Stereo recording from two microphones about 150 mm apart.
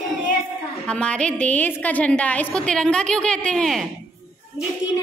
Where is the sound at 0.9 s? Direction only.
5° left (ahead or behind).